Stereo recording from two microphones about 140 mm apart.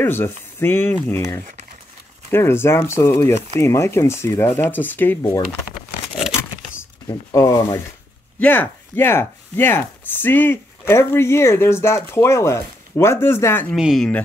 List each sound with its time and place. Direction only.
0.0 s speech: 15° left (ahead or behind)
2.3 s speech: 15° left (ahead or behind)
5.7 s patter: 5° right (ahead or behind)
7.2 s speech: 25° left (ahead or behind)
13.7 s speech: 5° right (ahead or behind)